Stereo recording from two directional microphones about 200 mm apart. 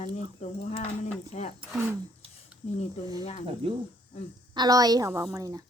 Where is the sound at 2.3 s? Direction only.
30° left (ahead or behind).